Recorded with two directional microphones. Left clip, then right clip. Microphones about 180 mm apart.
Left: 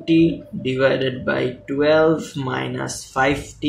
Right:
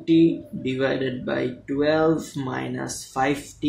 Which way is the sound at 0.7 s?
20° right (ahead or behind).